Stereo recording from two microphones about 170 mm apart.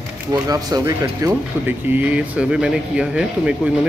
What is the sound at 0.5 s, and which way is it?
Speech, 20° right (ahead or behind).